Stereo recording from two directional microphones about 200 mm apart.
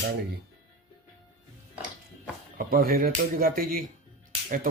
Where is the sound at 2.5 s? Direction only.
50° right (ahead or behind).